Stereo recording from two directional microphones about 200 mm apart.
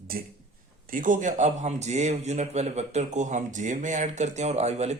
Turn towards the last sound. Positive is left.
turn(degrees=-35)  # may be behind; listen again after turning